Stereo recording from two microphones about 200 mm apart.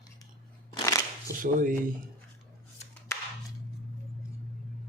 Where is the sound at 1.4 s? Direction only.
45° right (ahead or behind).